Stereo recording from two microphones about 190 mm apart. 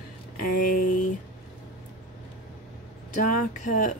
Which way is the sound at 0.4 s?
45° left (ahead or behind).